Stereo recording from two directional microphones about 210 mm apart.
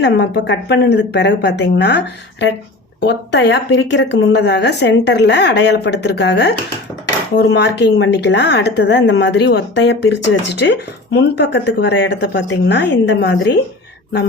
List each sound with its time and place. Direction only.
0.0 s a woman's voice: 55° left (ahead or behind)